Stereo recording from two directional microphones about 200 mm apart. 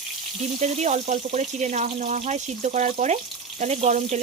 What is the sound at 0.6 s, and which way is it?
Speech, 35° right (ahead or behind).